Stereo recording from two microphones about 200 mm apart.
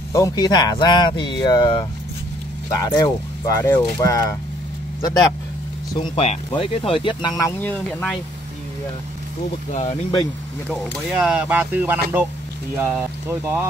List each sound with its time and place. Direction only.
0.1 s speech: 15° left (ahead or behind)
6.0 s speech: 30° left (ahead or behind); by 8.2 s 5° left (ahead or behind)
9.7 s speech: 35° left (ahead or behind)
10.7 s speech: centre (ahead or behind)